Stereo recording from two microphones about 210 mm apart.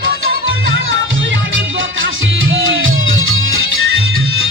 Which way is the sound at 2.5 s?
70° right (ahead or behind).